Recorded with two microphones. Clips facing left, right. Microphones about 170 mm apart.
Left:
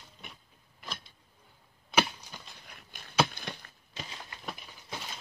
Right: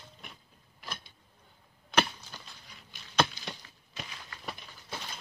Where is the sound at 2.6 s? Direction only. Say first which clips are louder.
Left 2 dB; 55° left (ahead or behind).